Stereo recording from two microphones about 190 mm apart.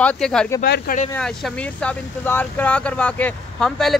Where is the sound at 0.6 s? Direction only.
55° left (ahead or behind).